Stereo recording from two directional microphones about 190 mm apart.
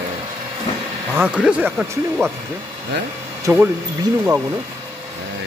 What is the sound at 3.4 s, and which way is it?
Speech, 15° right (ahead or behind).